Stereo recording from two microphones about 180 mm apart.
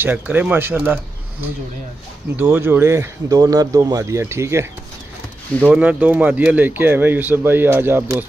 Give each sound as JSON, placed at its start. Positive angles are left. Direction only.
{"t": 0.0, "sound": "speech", "side_deg": -10}
{"t": 2.3, "sound": "speech", "side_deg": -5}
{"t": 5.6, "sound": "speech", "side_deg": -5}